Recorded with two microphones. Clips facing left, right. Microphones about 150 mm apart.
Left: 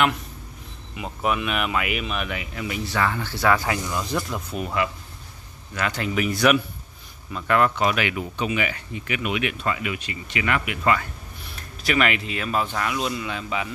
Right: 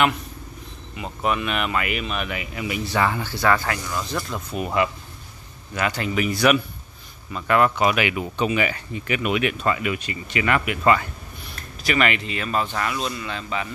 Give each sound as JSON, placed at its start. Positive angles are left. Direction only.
{"t": 0.9, "sound": "speech", "side_deg": 5}
{"t": 3.3, "sound": "speech", "side_deg": 5}
{"t": 5.8, "sound": "speech", "side_deg": -5}
{"t": 8.4, "sound": "speech", "side_deg": -35}
{"t": 11.8, "sound": "speech", "side_deg": 0}